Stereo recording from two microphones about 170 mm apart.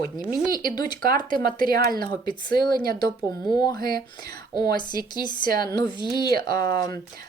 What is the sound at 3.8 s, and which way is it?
Speech, 60° right (ahead or behind).